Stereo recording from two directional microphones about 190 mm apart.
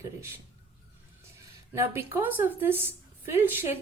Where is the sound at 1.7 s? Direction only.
15° right (ahead or behind).